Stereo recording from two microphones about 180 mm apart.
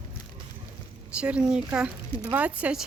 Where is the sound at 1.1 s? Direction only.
5° right (ahead or behind).